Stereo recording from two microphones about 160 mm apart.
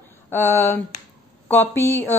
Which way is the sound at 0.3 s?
15° left (ahead or behind).